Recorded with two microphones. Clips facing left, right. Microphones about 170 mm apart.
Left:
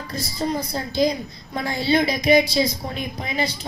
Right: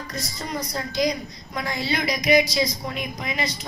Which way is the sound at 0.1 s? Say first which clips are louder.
Left 8 dB; 30° left (ahead or behind).